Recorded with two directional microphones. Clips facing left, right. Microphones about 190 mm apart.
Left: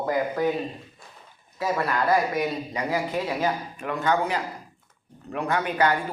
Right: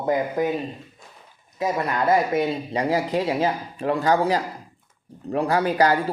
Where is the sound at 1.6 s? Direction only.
20° right (ahead or behind).